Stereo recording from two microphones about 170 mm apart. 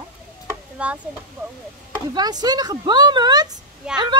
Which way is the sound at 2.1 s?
25° right (ahead or behind).